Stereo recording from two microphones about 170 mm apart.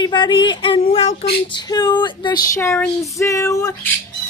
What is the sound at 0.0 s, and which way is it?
Speech, 25° left (ahead or behind).